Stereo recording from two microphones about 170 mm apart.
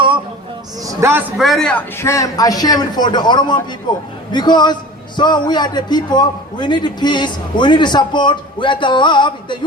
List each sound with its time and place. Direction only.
0.8 s a man's voice: 20° right (ahead or behind)
1.4 s a man's voice: centre (ahead or behind)
2.0 s a man's voice: 15° left (ahead or behind)